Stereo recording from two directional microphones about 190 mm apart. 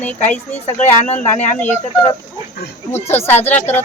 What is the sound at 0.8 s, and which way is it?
Speech, 35° left (ahead or behind).